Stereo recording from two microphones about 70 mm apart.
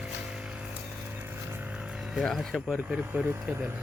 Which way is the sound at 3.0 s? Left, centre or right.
Centre.